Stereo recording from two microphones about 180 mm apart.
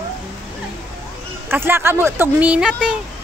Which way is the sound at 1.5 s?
15° right (ahead or behind).